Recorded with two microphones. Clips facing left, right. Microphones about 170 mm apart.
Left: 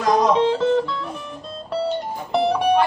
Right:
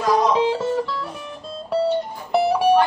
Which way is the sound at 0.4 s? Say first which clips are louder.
Left 2 dB; 5° right (ahead or behind).